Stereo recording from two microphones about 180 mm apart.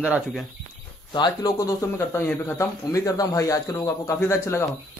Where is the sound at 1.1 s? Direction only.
25° left (ahead or behind).